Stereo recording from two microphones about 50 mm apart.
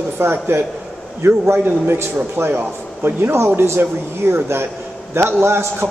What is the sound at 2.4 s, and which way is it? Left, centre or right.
Speech, right.